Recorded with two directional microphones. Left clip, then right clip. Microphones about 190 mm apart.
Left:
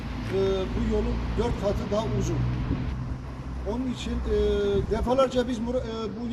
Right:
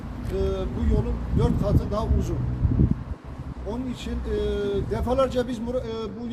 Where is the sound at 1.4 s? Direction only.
30° right (ahead or behind).